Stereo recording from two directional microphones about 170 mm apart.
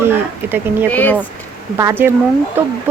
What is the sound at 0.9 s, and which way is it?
Speech, 10° left (ahead or behind).